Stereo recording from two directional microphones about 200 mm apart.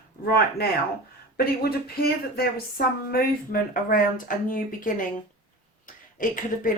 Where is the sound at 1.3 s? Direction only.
50° left (ahead or behind).